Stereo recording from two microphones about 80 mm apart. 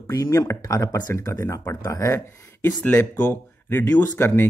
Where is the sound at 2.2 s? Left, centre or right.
Left.